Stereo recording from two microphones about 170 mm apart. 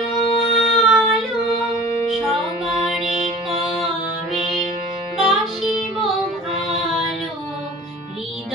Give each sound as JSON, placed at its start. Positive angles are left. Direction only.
{"t": 0.1, "sound": "music", "side_deg": 0}
{"t": 5.3, "sound": "music", "side_deg": 0}